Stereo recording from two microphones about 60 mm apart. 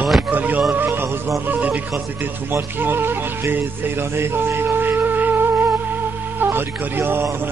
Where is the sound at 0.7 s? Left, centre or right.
Right.